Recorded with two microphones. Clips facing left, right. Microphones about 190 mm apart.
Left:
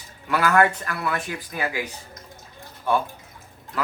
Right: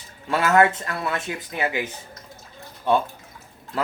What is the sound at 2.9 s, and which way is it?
Speech, 25° right (ahead or behind).